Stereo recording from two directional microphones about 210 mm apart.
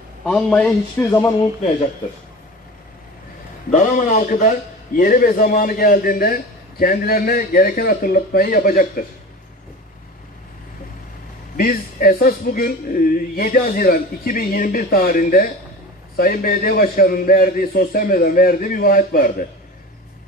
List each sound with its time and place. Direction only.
0.2 s a man's voice: 5° left (ahead or behind)
3.7 s a man's voice: 40° left (ahead or behind)
11.5 s speech: 45° left (ahead or behind)